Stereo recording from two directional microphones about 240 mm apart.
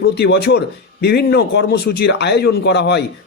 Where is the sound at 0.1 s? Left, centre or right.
Left.